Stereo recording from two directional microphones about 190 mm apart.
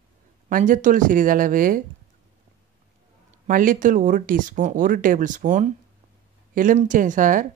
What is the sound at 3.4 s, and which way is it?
Speech, 45° right (ahead or behind).